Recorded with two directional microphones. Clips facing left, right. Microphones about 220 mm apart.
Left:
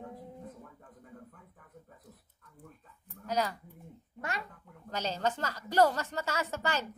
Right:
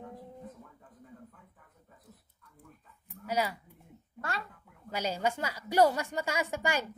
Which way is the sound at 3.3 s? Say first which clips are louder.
Even; 10° right (ahead or behind).